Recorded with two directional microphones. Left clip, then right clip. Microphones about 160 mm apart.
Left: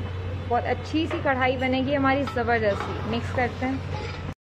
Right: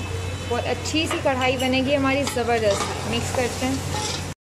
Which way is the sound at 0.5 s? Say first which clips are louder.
Right 1 dB; 5° right (ahead or behind).